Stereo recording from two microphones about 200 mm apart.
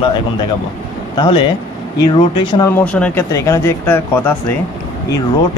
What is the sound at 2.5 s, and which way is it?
Speech, 15° left (ahead or behind).